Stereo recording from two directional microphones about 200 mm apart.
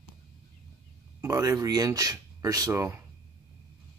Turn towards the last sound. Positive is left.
turn(degrees=-15)  # may be behind; listen again after turning